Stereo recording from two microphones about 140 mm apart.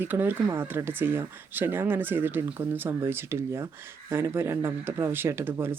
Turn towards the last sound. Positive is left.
turn(degrees=-15)  # may be behind; listen again after turning